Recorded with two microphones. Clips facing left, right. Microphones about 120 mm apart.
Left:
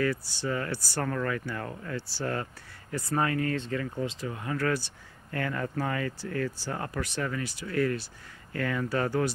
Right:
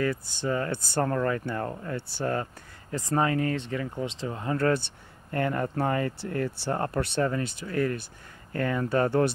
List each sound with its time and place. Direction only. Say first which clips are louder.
0.0 s speech: right 1 dB; 20° right (ahead or behind)
2.0 s speech: right 1 dB; 55° right (ahead or behind)
2.9 s speech: right 3 dB; 20° right (ahead or behind)